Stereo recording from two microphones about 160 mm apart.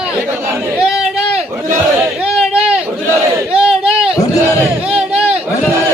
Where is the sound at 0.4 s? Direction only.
15° right (ahead or behind).